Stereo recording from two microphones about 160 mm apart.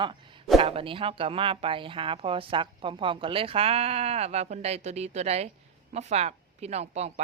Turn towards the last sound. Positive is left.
turn(degrees=-40)  # may be behind; listen again after turning